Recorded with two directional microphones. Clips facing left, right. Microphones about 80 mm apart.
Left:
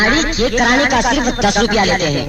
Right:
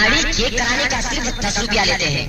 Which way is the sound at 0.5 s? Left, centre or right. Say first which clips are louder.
Left 11 dB; left.